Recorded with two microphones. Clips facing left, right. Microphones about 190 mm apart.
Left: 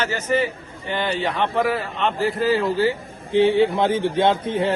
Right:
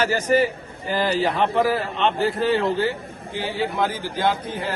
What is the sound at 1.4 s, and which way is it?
A man's voice, centre (ahead or behind).